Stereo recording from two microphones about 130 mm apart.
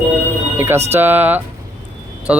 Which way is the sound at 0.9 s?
15° right (ahead or behind).